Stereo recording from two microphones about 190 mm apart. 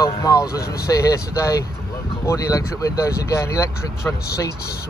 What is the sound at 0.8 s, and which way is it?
Speech, 15° left (ahead or behind).